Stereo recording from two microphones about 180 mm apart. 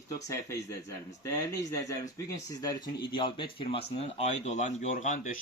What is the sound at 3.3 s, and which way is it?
Speech, 30° left (ahead or behind).